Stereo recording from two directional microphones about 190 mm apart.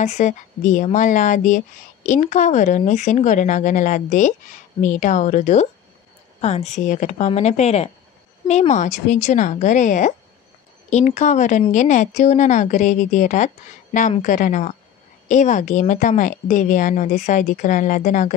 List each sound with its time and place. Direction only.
0.0 s speech: 40° left (ahead or behind)